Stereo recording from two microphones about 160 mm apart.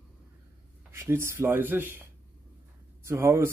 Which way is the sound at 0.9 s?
15° right (ahead or behind).